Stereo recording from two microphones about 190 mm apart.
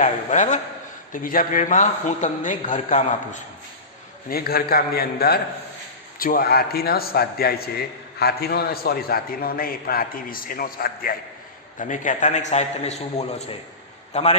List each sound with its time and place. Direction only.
0.0 s a man's voice: 40° left (ahead or behind)
4.3 s a man's voice: 50° left (ahead or behind); by 14.3 s 35° left (ahead or behind)